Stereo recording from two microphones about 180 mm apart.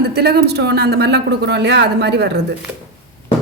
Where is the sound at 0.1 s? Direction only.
65° right (ahead or behind).